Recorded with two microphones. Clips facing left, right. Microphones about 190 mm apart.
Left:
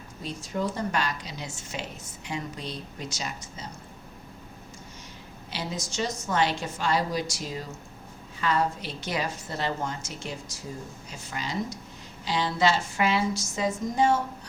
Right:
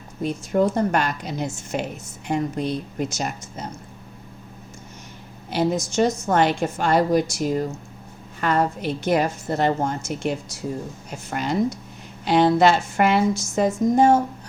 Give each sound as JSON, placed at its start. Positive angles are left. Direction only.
{"t": 0.2, "sound": "a woman's voice", "side_deg": -55}
{"t": 5.5, "sound": "a woman's voice", "side_deg": -55}